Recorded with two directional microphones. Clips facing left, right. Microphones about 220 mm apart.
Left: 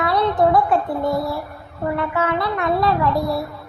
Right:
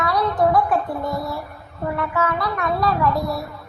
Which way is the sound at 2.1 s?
25° left (ahead or behind).